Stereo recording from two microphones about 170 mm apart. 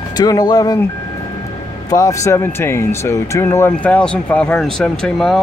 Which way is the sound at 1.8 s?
20° left (ahead or behind).